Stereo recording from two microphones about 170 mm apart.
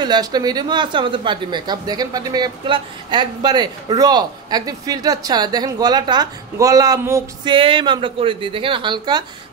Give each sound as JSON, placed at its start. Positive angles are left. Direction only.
{"t": 0.0, "sound": "speech", "side_deg": -25}
{"t": 7.5, "sound": "a woman's voice", "side_deg": -30}